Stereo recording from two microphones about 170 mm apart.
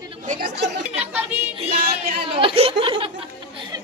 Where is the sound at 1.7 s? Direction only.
65° right (ahead or behind).